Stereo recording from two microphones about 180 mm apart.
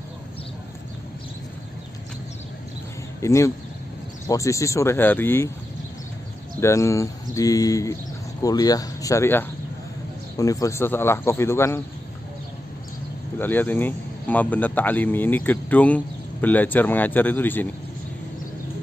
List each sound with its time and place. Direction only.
3.2 s speech: 15° left (ahead or behind)
6.6 s speech: 15° left (ahead or behind)
13.4 s speech: 10° left (ahead or behind)